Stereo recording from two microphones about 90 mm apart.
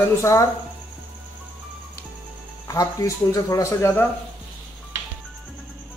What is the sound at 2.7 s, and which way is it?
Speech, 35° left (ahead or behind).